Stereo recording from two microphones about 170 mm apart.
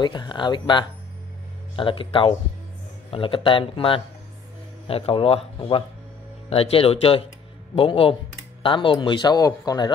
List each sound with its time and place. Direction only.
0.0 s speech: 25° left (ahead or behind)